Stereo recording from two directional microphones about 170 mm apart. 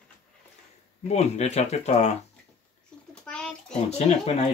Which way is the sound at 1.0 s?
40° left (ahead or behind).